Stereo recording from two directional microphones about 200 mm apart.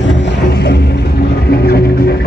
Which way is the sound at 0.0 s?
65° left (ahead or behind).